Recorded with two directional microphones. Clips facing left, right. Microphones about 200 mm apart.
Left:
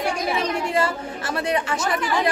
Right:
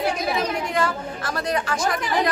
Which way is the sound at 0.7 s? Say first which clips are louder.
Left 1 dB; 25° left (ahead or behind).